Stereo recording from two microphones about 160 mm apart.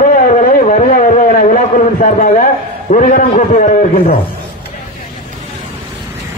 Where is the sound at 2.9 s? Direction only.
55° left (ahead or behind).